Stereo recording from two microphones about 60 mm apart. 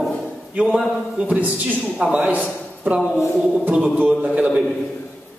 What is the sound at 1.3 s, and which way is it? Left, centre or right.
A man's voice, right.